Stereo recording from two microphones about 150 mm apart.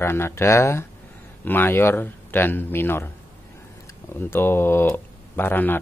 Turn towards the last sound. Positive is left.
turn(degrees=15)  # may be behind; listen again after turning